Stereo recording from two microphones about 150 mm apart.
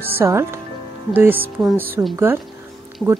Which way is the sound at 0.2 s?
20° right (ahead or behind).